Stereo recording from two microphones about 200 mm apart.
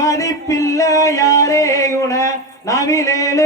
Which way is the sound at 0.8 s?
15° left (ahead or behind).